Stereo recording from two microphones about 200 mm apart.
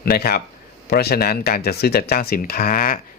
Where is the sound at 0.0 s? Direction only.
50° left (ahead or behind).